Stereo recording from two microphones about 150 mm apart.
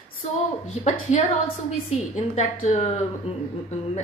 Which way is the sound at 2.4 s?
45° left (ahead or behind).